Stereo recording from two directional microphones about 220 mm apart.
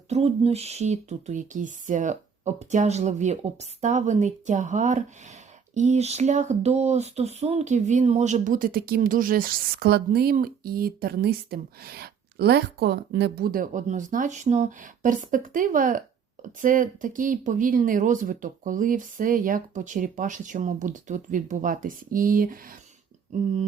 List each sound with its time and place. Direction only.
0.1 s speech: 30° right (ahead or behind)